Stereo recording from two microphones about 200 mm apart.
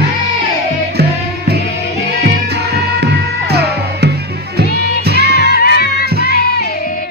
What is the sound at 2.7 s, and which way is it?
Music, 55° right (ahead or behind).